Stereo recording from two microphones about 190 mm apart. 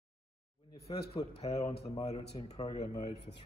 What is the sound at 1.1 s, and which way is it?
A man's voice, 30° left (ahead or behind).